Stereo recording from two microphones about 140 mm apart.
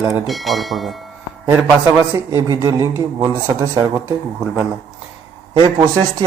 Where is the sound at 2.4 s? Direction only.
20° right (ahead or behind).